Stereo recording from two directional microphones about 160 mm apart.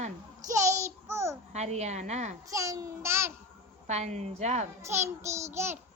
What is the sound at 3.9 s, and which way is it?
Speech, 45° right (ahead or behind).